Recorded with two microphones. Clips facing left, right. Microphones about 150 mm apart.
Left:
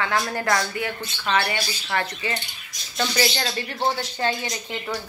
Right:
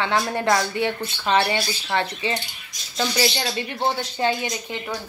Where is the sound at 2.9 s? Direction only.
10° right (ahead or behind).